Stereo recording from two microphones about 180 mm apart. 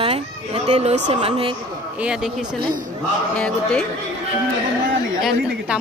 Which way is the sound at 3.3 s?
5° left (ahead or behind).